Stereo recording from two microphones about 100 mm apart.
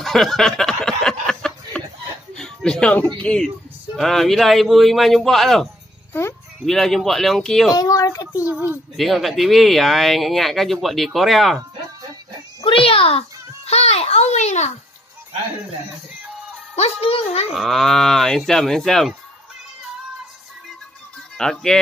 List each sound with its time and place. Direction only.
0.0 s a sound: 5° left (ahead or behind)
3.2 s speech: 10° left (ahead or behind)
7.7 s a woman's voice: 40° left (ahead or behind)
8.5 s a child's voice: 15° right (ahead or behind)
8.9 s speech: centre (ahead or behind)
12.6 s a sound: 60° left (ahead or behind)
13.7 s a sound: 90° left
16.7 s speech: 85° left
17.5 s speech: centre (ahead or behind)
21.4 s speech: 5° left (ahead or behind)